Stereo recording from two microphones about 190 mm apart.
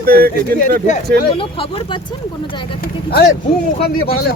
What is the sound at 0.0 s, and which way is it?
Speech, 50° right (ahead or behind).